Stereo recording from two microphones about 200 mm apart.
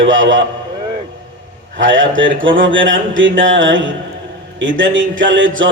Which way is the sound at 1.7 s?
70° right (ahead or behind).